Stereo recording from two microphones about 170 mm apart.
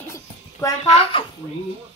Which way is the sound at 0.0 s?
15° left (ahead or behind).